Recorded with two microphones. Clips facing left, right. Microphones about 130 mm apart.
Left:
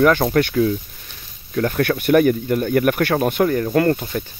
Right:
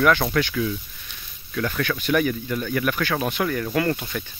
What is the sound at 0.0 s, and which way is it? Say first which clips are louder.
Speech: left 5 dB; 40° left (ahead or behind).